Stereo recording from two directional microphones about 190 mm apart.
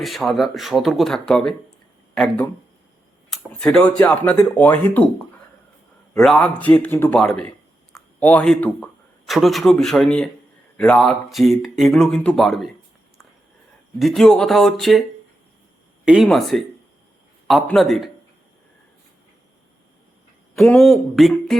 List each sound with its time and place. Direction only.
0.0 s speech: centre (ahead or behind)
6.1 s speech: centre (ahead or behind)
14.0 s speech: centre (ahead or behind)
16.0 s speech: centre (ahead or behind)
20.6 s speech: centre (ahead or behind)